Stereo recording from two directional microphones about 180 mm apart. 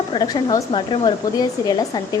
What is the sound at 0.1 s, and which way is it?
A woman's voice, 25° left (ahead or behind).